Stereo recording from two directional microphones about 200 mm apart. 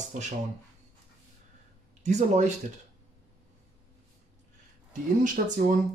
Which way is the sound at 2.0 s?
35° right (ahead or behind).